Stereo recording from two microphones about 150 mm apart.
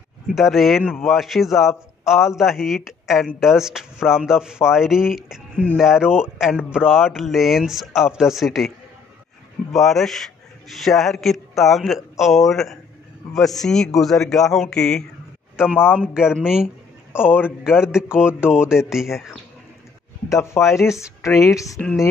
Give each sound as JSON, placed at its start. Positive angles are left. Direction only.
{"t": 0.3, "sound": "a man's voice", "side_deg": 0}
{"t": 20.2, "sound": "speech", "side_deg": 20}
{"t": 21.7, "sound": "a man's voice", "side_deg": 0}